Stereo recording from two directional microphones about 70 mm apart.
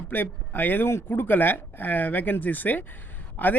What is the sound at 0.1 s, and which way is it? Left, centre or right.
Speech, left.